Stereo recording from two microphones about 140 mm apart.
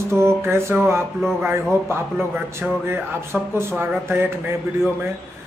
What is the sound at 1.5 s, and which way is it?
A man's voice, 20° right (ahead or behind).